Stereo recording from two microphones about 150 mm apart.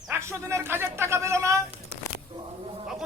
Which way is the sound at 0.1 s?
20° right (ahead or behind).